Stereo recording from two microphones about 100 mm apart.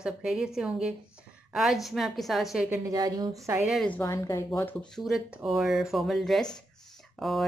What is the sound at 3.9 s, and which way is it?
Speech, 30° left (ahead or behind).